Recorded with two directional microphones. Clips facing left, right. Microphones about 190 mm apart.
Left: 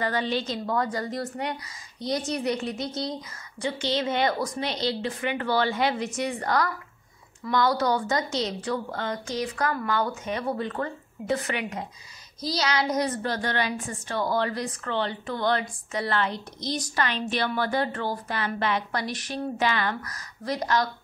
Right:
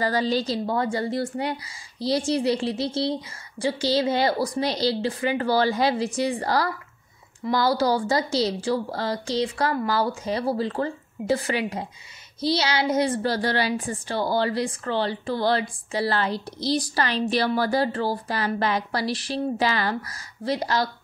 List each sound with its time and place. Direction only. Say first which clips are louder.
0.0 s a woman's voice: right 4 dB; 35° right (ahead or behind)